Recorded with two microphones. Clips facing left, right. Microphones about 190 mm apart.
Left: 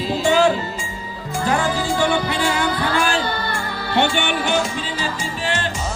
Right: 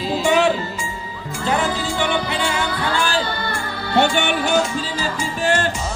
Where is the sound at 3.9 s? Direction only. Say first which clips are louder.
Right 2 dB; 40° right (ahead or behind).